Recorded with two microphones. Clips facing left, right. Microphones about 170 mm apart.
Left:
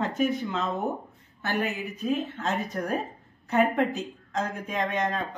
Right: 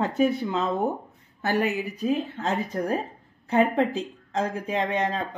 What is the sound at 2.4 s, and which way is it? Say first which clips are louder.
Speech: right 2 dB; 30° right (ahead or behind).